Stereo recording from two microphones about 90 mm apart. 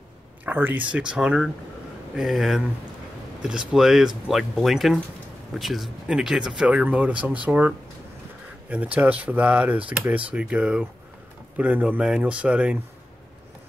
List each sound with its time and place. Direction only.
0.5 s speech: 20° right (ahead or behind)
0.9 s speech: 10° right (ahead or behind)